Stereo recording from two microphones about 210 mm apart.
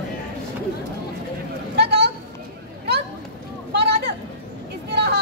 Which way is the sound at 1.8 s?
50° right (ahead or behind).